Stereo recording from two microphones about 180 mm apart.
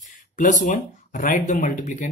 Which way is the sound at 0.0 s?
45° left (ahead or behind).